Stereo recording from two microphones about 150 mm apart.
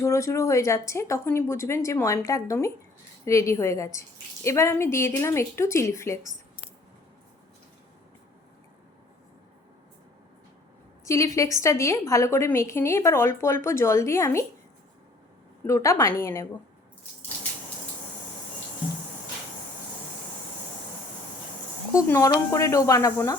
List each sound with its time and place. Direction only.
0.0 s a woman's voice: 20° left (ahead or behind)
11.0 s a woman's voice: 20° left (ahead or behind)
15.6 s a woman's voice: 20° left (ahead or behind)
21.9 s a woman's voice: 20° left (ahead or behind)